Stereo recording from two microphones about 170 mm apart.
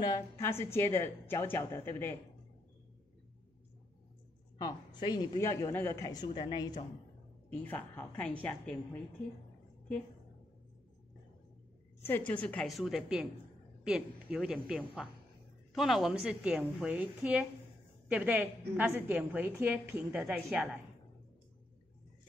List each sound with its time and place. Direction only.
0.0 s a woman's voice: 15° left (ahead or behind)
4.6 s a woman's voice: 25° left (ahead or behind)
7.4 s a woman's voice: 10° left (ahead or behind)
12.3 s a woman's voice: 10° left (ahead or behind); by 20.7 s 10° right (ahead or behind)